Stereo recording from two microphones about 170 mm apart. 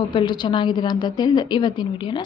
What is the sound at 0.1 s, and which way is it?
A woman's voice, 25° left (ahead or behind).